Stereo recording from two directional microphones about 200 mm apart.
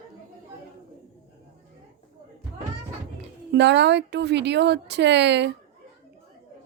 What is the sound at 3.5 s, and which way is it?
Speech, 60° right (ahead or behind).